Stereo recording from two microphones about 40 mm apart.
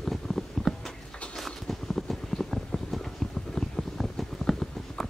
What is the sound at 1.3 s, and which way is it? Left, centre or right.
Clip-clop, centre.